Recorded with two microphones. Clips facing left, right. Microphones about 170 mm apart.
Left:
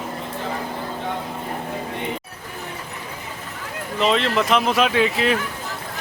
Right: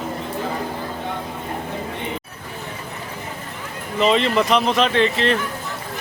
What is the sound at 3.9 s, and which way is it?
Speech, centre (ahead or behind).